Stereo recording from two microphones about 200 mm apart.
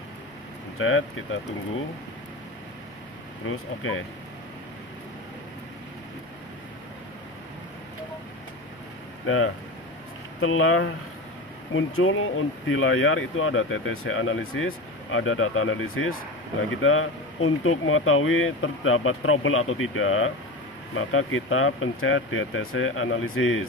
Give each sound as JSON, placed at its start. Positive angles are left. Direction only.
{"t": 0.7, "sound": "speech", "side_deg": 90}
{"t": 3.4, "sound": "speech", "side_deg": 90}
{"t": 9.2, "sound": "speech", "side_deg": 90}